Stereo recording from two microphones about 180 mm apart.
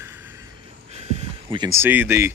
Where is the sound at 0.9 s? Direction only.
35° right (ahead or behind).